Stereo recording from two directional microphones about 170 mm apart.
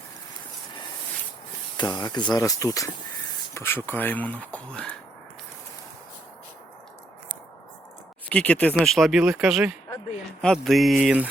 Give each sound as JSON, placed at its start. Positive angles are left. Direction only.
{"t": 1.7, "sound": "speech", "side_deg": 25}
{"t": 8.3, "sound": "speech", "side_deg": 10}